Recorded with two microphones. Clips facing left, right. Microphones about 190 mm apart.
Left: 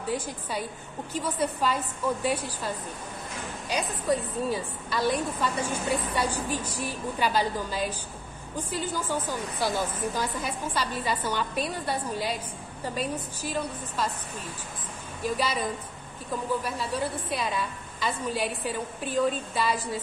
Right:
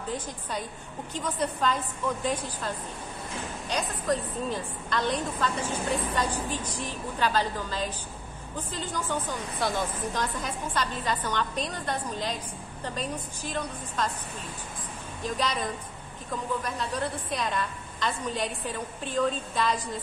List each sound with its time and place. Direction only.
0.1 s a woman's voice: 5° left (ahead or behind)
15.2 s a woman's voice: 5° left (ahead or behind)